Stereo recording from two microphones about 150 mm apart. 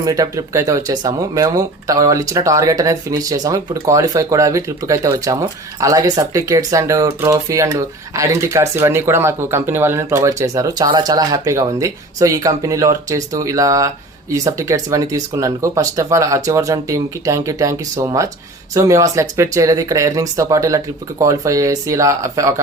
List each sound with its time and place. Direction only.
0.0 s speech: 25° right (ahead or behind)